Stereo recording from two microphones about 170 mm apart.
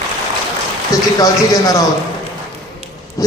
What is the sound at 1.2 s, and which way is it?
Speech, 20° left (ahead or behind).